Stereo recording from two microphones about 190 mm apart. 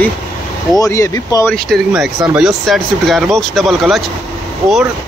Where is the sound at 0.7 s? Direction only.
15° left (ahead or behind).